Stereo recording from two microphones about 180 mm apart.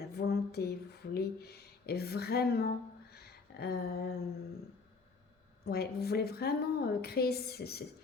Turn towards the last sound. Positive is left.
turn(degrees=60)  # may be behind; listen again after turning